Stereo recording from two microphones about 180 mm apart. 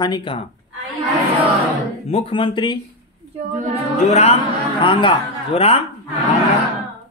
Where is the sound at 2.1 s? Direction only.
30° left (ahead or behind).